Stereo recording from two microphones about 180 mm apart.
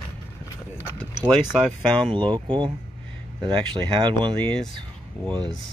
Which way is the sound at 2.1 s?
25° right (ahead or behind).